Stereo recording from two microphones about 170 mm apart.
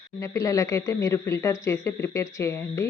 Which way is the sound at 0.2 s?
20° left (ahead or behind).